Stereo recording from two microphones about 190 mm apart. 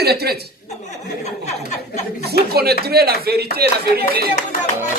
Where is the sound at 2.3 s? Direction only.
55° right (ahead or behind).